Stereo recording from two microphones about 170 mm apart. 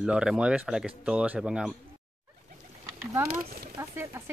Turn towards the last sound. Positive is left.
turn(degrees=-15)  # may be behind; listen again after turning